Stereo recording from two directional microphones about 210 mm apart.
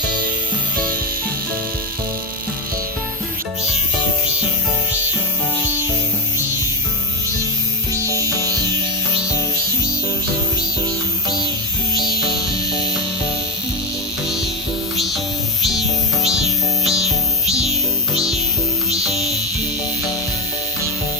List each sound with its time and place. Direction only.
14.9 s music: centre (ahead or behind)
17.5 s music: 30° right (ahead or behind)
19.0 s music: centre (ahead or behind)